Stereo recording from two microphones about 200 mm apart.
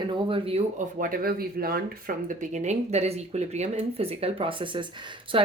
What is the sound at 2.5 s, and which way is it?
A woman's voice, 35° right (ahead or behind).